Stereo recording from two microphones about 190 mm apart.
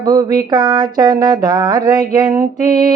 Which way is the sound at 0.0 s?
20° right (ahead or behind).